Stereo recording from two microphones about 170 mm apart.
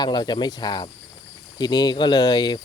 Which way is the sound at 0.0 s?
25° left (ahead or behind).